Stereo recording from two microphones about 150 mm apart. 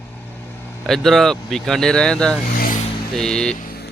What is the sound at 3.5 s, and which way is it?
Vehicle, 80° left.